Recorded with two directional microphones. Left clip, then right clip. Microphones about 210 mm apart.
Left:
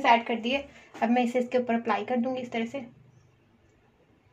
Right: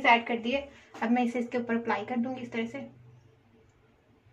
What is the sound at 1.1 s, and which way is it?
Speech, 40° left (ahead or behind).